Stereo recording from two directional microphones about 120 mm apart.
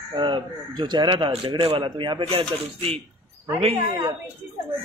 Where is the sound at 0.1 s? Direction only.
40° right (ahead or behind).